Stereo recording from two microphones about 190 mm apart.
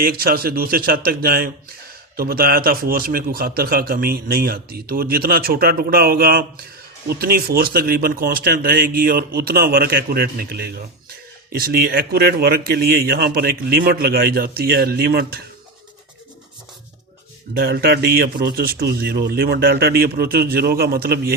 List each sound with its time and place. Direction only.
0.0 s a man's voice: 50° right (ahead or behind)
17.6 s a man's voice: 55° right (ahead or behind)